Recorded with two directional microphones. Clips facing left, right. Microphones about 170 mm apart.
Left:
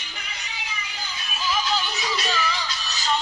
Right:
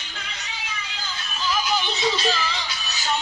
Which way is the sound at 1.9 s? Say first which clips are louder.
Right 4 dB; 25° right (ahead or behind).